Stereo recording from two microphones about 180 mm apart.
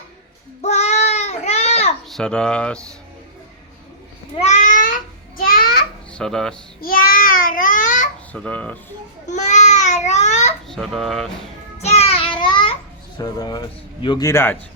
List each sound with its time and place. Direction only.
0.6 s child singing: 40° left (ahead or behind)
2.0 s speech: 5° left (ahead or behind)
4.4 s babbling: 40° left (ahead or behind)
5.5 s a sound: 55° left (ahead or behind)
6.1 s speech: 5° left (ahead or behind)
6.8 s a child's voice: 55° left (ahead or behind)
8.3 s speech: 10° left (ahead or behind)
9.2 s speech: 40° left (ahead or behind)
10.7 s speech: centre (ahead or behind)
11.8 s child singing: 35° left (ahead or behind)
13.1 s a man's voice: 20° left (ahead or behind)